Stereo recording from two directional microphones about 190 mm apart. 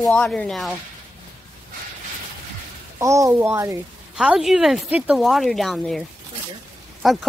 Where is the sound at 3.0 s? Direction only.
15° right (ahead or behind); by 7.3 s centre (ahead or behind).